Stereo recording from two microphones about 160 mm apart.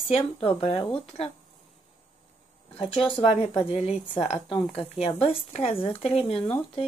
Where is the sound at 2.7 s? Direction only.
35° left (ahead or behind).